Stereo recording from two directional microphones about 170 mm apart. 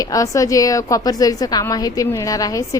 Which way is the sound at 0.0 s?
20° left (ahead or behind).